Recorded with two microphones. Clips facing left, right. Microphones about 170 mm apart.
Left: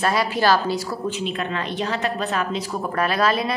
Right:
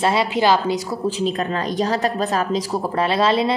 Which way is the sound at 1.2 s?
35° right (ahead or behind).